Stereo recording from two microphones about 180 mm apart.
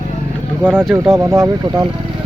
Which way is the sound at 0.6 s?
10° right (ahead or behind).